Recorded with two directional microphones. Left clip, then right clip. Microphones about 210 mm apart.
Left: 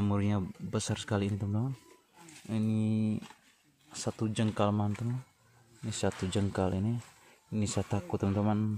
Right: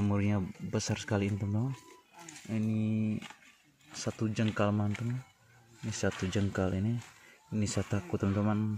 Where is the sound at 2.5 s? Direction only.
15° left (ahead or behind).